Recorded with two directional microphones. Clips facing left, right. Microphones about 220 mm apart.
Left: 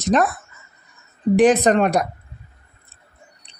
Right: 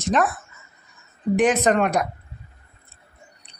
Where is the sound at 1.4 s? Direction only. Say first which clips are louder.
Left 4 dB; 35° left (ahead or behind).